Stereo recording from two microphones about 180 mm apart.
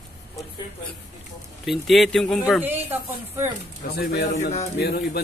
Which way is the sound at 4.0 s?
65° left (ahead or behind).